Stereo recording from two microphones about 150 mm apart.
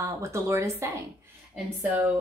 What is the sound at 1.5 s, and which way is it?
Speech, 5° right (ahead or behind).